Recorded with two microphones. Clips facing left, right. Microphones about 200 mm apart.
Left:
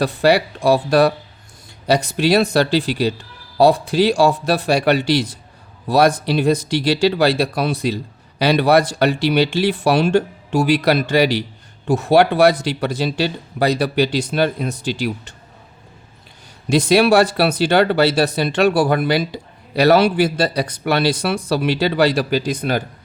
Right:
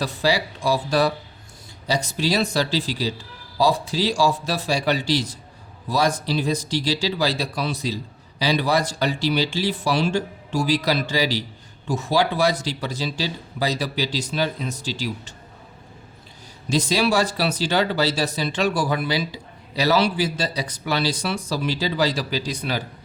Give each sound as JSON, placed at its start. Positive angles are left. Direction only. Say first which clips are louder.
{"t": 0.0, "sound": "speech", "louder": "left 7 dB", "side_deg": 60}
{"t": 16.6, "sound": "speech", "louder": "left 7 dB", "side_deg": 60}